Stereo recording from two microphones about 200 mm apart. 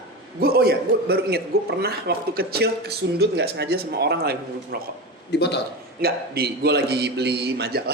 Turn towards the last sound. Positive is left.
turn(degrees=-55)  # may be behind; listen again after turning